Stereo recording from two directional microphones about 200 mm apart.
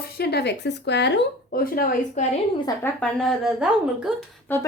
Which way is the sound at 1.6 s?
45° left (ahead or behind).